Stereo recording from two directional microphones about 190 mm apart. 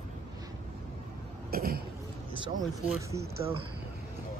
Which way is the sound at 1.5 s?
50° right (ahead or behind).